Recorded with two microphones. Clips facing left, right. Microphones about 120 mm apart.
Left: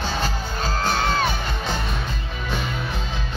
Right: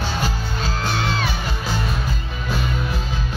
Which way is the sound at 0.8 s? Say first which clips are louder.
Left 3 dB; 45° left (ahead or behind).